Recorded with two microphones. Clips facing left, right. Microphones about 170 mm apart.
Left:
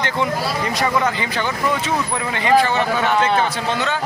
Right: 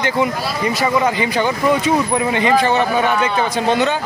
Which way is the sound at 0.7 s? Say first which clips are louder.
Right 3 dB; 10° right (ahead or behind).